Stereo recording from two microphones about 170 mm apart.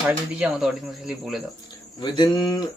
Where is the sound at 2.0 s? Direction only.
25° left (ahead or behind).